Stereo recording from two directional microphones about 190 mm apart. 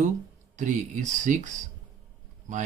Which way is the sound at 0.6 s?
40° right (ahead or behind).